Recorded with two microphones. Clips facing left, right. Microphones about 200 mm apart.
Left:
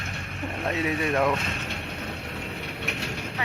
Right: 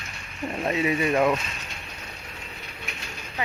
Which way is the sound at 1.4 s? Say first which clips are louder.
Left 6 dB; 65° left (ahead or behind).